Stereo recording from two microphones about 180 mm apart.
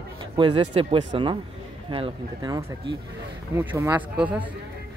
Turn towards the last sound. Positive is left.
turn(degrees=-10)  # may be behind; listen again after turning